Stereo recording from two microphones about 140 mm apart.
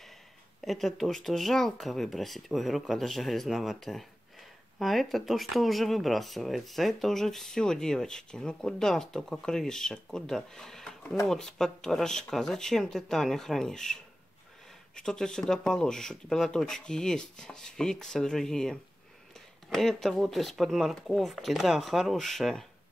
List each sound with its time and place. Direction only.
0.6 s speech: centre (ahead or behind)
15.0 s speech: 5° left (ahead or behind)